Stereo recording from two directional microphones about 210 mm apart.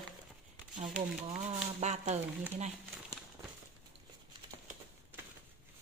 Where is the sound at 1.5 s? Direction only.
30° right (ahead or behind).